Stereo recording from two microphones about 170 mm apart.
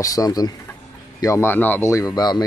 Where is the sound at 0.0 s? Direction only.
20° left (ahead or behind).